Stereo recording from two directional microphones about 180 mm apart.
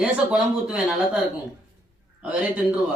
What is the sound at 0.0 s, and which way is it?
Speech, 5° right (ahead or behind).